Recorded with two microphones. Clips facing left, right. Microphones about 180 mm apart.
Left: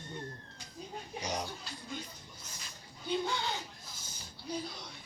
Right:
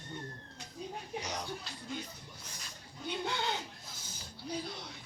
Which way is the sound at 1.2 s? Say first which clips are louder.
Left 8 dB; 15° left (ahead or behind).